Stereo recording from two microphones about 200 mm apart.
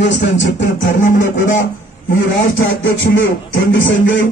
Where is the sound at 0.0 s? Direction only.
65° left (ahead or behind).